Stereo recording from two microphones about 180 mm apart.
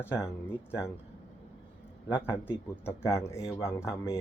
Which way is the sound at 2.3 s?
10° left (ahead or behind).